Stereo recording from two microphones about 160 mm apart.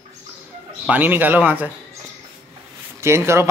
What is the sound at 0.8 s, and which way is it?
Speech, 10° right (ahead or behind).